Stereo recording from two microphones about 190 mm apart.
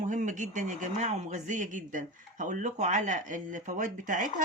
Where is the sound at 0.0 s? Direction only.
40° right (ahead or behind).